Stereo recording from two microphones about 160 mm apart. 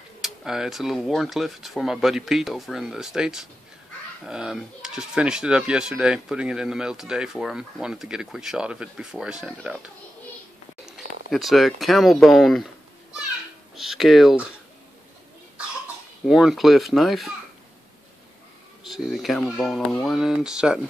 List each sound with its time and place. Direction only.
0.2 s speech: centre (ahead or behind)
10.9 s speech: centre (ahead or behind)
13.7 s speech: centre (ahead or behind)
16.3 s speech: centre (ahead or behind)
18.9 s speech: centre (ahead or behind)